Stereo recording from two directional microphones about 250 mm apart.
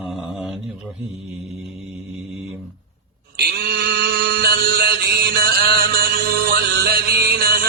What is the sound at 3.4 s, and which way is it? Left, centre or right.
Mantra, right.